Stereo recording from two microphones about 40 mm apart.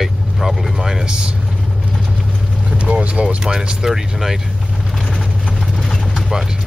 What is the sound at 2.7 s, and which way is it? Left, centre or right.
Speech, right.